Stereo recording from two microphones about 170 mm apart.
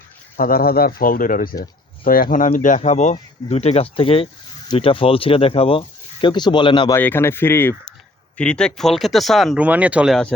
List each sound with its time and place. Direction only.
0.3 s speech: 55° left (ahead or behind); by 6.9 s 30° left (ahead or behind)
6.9 s speech: 15° left (ahead or behind); by 10.2 s 5° right (ahead or behind)